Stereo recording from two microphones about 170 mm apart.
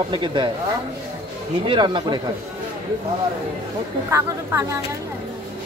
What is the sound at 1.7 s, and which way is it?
Speech, 25° right (ahead or behind).